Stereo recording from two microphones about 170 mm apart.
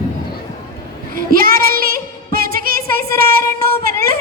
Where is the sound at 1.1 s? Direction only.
55° right (ahead or behind).